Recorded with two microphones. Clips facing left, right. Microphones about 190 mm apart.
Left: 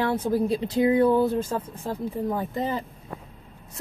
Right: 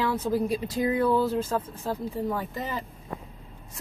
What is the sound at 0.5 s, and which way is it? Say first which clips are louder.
Speech: left 5 dB; 25° left (ahead or behind).